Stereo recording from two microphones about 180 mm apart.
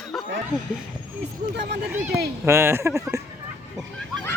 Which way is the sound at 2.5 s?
15° right (ahead or behind).